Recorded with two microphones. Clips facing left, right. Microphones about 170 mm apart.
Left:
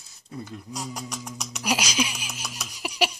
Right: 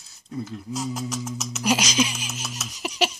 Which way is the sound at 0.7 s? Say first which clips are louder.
Right 6 dB; 5° right (ahead or behind).